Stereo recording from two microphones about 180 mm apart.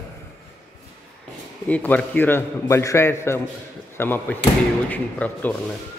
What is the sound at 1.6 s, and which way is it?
Speech, 10° left (ahead or behind).